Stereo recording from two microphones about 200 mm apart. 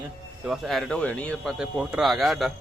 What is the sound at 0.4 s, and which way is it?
Speech, centre (ahead or behind).